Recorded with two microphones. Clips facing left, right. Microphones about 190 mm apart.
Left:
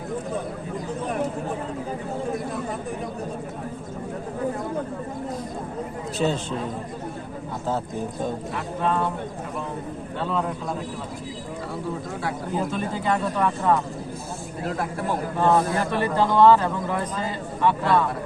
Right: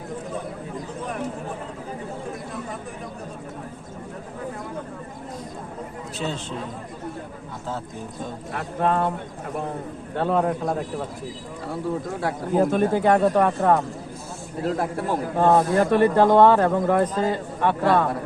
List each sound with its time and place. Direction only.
6.2 s a man's voice: 45° left (ahead or behind)
8.5 s speech: 50° right (ahead or behind)
10.2 s speech: 55° right (ahead or behind)
12.2 s speech: 55° right (ahead or behind)
14.6 s a man's voice: 35° right (ahead or behind)
15.4 s speech: 50° right (ahead or behind)